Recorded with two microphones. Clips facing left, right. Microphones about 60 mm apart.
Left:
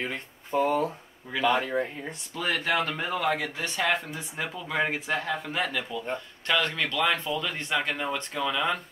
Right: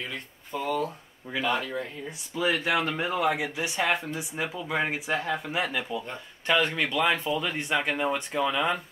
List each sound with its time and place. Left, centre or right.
0.0 s speech: left
1.3 s speech: centre
1.6 s speech: left
2.0 s speech: centre